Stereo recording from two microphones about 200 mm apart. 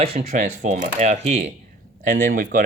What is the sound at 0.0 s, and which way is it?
Speech, 30° right (ahead or behind).